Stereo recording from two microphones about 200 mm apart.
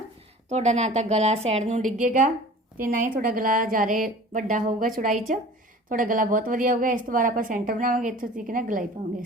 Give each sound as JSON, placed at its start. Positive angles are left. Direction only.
{"t": 0.5, "sound": "a woman's voice", "side_deg": -35}